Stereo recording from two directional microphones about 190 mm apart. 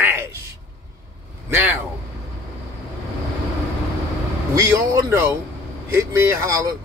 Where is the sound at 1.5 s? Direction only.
10° right (ahead or behind).